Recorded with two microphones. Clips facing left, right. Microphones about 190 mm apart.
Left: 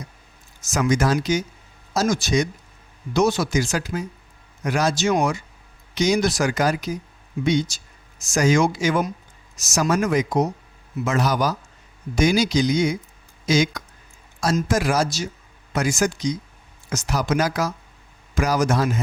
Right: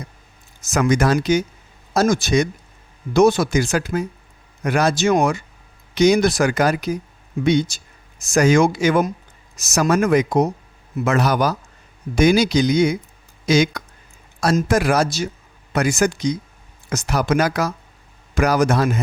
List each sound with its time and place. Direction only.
0.6 s speech: 60° right (ahead or behind)